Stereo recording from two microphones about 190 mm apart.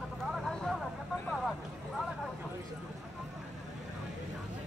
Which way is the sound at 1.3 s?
Centre (ahead or behind).